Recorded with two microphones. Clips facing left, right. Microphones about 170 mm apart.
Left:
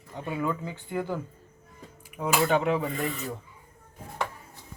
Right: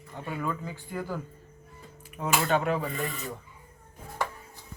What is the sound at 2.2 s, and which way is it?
Speech, 10° left (ahead or behind).